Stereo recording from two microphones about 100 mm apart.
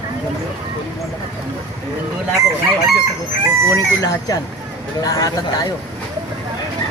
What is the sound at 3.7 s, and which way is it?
Speech, 35° left (ahead or behind).